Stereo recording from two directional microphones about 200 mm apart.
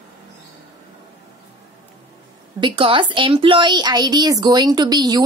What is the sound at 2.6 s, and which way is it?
Speech, 25° right (ahead or behind).